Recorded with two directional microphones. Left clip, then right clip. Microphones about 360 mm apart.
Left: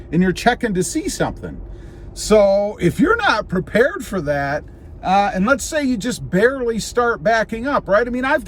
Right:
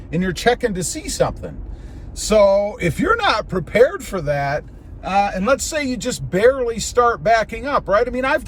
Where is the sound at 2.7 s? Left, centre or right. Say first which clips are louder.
Left 2 dB; centre.